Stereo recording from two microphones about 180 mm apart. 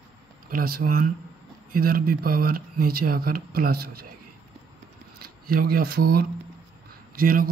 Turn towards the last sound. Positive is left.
turn(degrees=-55)  # may be behind; listen again after turning